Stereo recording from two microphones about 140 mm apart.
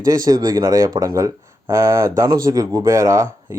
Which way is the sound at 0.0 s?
25° right (ahead or behind).